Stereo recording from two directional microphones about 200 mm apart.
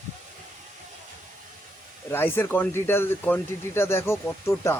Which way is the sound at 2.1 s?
10° left (ahead or behind).